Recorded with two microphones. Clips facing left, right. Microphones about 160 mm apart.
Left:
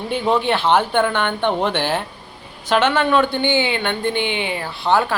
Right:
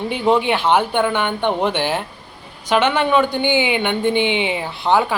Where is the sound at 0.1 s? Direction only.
15° right (ahead or behind).